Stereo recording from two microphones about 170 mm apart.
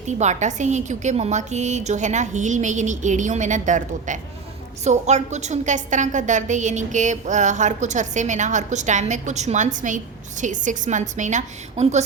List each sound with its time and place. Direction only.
0.2 s a woman's voice: 45° right (ahead or behind)